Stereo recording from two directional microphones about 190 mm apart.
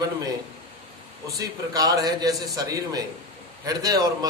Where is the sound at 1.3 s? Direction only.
20° right (ahead or behind).